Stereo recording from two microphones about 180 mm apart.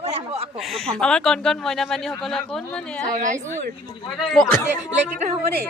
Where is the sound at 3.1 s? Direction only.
45° right (ahead or behind).